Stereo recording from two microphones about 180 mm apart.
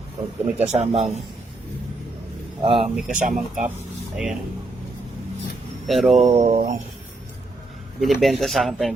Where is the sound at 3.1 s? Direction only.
50° right (ahead or behind).